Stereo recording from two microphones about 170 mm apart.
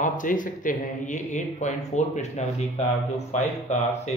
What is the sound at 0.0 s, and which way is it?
Speech, 50° left (ahead or behind).